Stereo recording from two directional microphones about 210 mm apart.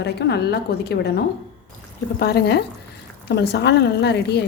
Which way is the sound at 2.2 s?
50° left (ahead or behind).